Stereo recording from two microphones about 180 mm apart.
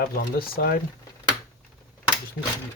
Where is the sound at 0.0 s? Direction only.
55° left (ahead or behind).